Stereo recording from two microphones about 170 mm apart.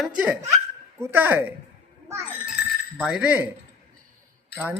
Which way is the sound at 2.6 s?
70° left (ahead or behind).